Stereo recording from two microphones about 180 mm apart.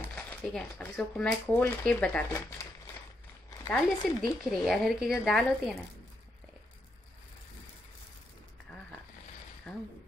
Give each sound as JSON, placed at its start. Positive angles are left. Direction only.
{"t": 0.1, "sound": "speech", "side_deg": 10}
{"t": 3.4, "sound": "speech", "side_deg": 15}
{"t": 4.4, "sound": "speech", "side_deg": 0}
{"t": 9.7, "sound": "speech", "side_deg": 5}